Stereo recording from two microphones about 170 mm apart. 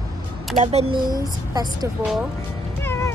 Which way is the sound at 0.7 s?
35° right (ahead or behind).